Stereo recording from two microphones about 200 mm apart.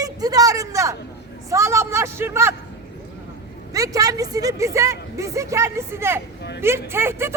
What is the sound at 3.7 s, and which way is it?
A woman's voice, 15° right (ahead or behind).